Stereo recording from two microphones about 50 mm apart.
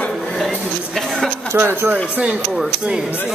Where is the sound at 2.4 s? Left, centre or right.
Centre.